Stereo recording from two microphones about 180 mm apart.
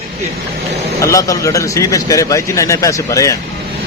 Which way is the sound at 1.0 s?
15° left (ahead or behind).